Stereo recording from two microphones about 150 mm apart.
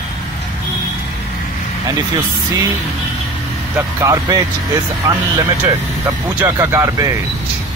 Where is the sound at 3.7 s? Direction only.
25° right (ahead or behind).